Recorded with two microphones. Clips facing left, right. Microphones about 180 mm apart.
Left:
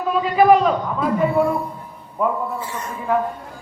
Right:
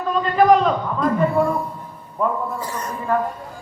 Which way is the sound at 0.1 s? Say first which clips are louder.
Left 1 dB; 5° left (ahead or behind).